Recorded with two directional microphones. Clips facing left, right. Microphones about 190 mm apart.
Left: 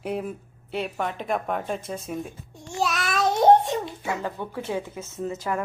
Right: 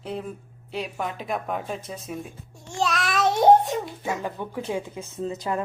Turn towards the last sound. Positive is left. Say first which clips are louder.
# even
turn(degrees=-20)  # may be behind; listen again after turning